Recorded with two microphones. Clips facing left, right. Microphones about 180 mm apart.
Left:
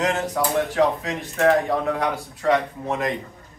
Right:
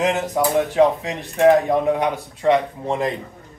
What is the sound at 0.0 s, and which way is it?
Speech, 15° right (ahead or behind).